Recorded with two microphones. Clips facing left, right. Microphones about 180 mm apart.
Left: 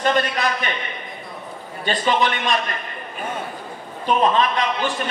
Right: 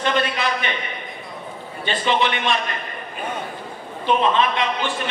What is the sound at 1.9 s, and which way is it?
Speech, 45° left (ahead or behind).